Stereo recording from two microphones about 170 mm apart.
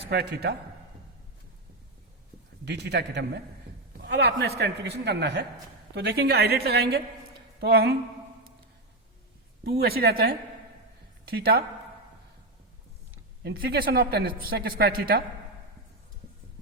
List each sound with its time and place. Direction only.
0.1 s a woman's voice: 70° right (ahead or behind)
2.6 s a man's voice: 80° right
9.6 s a woman's voice: 65° right (ahead or behind)
13.4 s a woman's voice: 70° right (ahead or behind)